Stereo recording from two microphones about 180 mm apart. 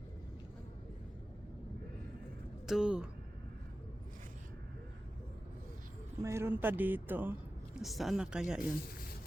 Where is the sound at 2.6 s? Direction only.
5° right (ahead or behind).